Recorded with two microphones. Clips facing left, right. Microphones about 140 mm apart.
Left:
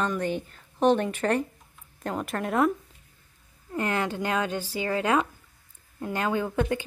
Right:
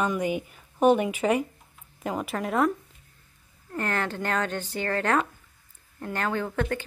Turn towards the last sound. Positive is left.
turn(degrees=15)  # may be behind; listen again after turning